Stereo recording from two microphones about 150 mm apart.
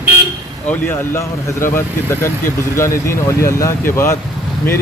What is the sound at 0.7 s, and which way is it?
Speech, 15° left (ahead or behind).